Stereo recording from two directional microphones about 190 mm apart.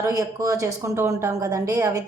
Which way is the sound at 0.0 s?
20° right (ahead or behind).